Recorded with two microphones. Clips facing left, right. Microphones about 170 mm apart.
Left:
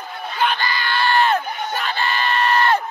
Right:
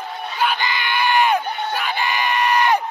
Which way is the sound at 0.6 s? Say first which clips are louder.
Even; 20° right (ahead or behind).